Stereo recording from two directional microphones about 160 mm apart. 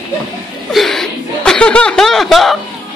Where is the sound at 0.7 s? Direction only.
Centre (ahead or behind).